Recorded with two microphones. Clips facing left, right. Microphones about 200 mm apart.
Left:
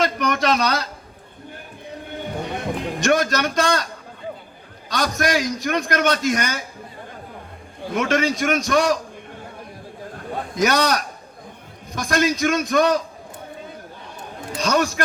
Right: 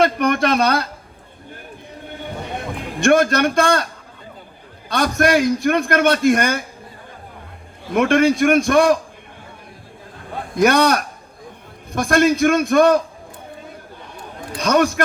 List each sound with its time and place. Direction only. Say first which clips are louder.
0.0 s speech: right 4 dB; 55° right (ahead or behind)
3.0 s a man's voice: right 6 dB; 55° right (ahead or behind)
4.9 s a man's voice: right 5 dB; 55° right (ahead or behind)
7.9 s a man's voice: right 6 dB; 55° right (ahead or behind)
10.5 s a man's voice: right 5 dB; 55° right (ahead or behind)
14.6 s a man's voice: right 4 dB; 55° right (ahead or behind)